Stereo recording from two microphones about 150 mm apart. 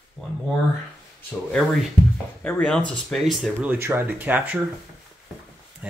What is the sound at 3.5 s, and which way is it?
Speech, 15° right (ahead or behind).